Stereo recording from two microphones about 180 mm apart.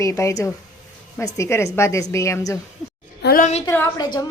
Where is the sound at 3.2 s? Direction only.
55° left (ahead or behind).